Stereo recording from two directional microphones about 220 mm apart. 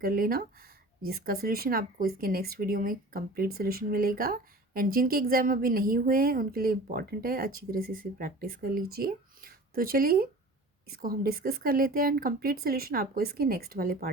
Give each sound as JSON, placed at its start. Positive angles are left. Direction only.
{"t": 0.0, "sound": "speech", "side_deg": -40}